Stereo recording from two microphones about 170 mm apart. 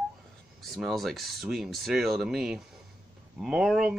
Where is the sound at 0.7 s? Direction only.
Centre (ahead or behind).